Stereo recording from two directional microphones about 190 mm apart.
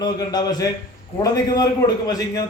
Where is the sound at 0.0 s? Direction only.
20° left (ahead or behind).